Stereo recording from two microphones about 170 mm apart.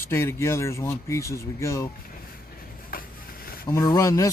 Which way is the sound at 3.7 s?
20° left (ahead or behind).